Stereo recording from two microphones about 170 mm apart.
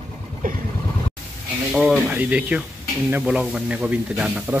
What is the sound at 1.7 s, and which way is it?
A man's voice, 5° right (ahead or behind).